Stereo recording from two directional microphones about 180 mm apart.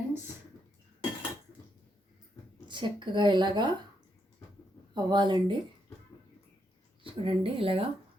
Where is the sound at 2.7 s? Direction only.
25° right (ahead or behind).